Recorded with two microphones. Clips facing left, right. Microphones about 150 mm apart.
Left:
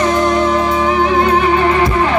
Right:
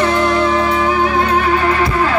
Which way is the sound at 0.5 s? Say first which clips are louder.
Left 1 dB; 5° left (ahead or behind).